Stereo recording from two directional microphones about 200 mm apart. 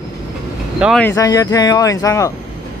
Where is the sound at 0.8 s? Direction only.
5° left (ahead or behind).